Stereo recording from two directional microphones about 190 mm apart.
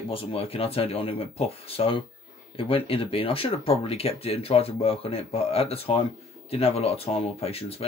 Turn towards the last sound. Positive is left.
turn(degrees=30)  # may be behind; listen again after turning